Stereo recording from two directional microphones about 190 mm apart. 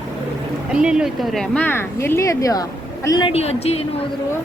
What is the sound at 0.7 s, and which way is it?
A woman's voice, 5° right (ahead or behind).